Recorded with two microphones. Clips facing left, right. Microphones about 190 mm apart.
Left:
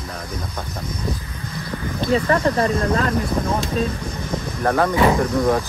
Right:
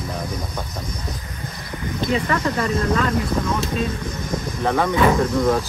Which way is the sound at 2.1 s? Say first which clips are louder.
Left 5 dB; 35° left (ahead or behind).